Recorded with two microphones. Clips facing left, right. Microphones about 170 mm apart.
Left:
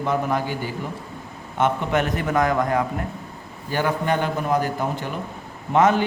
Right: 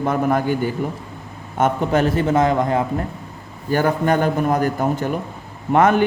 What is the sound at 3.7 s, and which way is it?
Speech, 45° right (ahead or behind).